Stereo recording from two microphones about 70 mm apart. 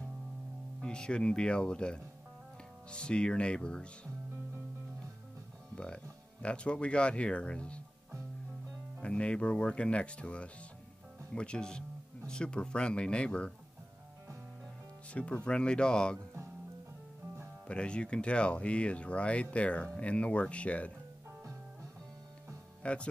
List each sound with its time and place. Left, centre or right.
0.8 s speech: centre
6.4 s speech: centre
9.0 s speech: centre
15.1 s speech: centre
17.6 s speech: centre
22.8 s speech: centre